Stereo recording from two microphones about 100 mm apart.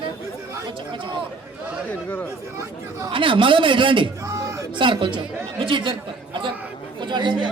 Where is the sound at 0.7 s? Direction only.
55° right (ahead or behind).